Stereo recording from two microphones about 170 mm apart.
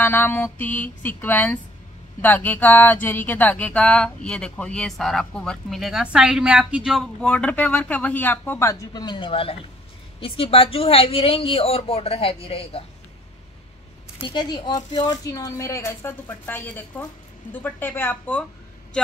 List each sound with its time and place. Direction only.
0.0 s speech: 10° left (ahead or behind); by 12.8 s 35° left (ahead or behind)
14.2 s speech: 25° left (ahead or behind); by 18.4 s 10° left (ahead or behind)